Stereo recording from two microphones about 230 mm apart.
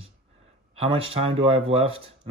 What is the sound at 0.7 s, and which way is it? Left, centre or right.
A man's voice, right.